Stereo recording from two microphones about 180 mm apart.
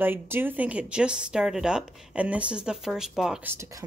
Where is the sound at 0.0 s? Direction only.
10° right (ahead or behind).